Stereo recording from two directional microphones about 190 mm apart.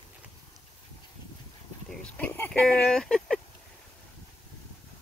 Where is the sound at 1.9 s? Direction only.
5° left (ahead or behind).